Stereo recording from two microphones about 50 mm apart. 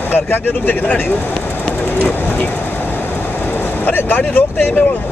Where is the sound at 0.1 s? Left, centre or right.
Left.